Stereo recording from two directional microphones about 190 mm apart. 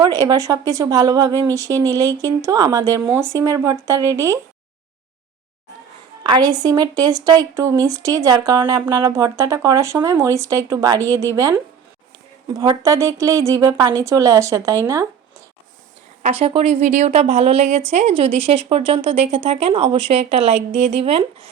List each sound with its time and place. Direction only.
0.0 s speech: 20° right (ahead or behind)
6.2 s a woman's voice: 20° right (ahead or behind)
16.2 s a woman's voice: 30° right (ahead or behind)